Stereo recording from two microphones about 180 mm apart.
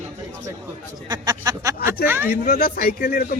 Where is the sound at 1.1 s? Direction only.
20° right (ahead or behind).